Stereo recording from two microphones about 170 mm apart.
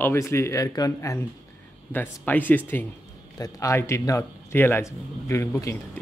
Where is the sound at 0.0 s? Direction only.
15° left (ahead or behind).